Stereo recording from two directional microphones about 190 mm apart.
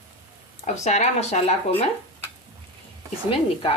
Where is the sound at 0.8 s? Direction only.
35° left (ahead or behind).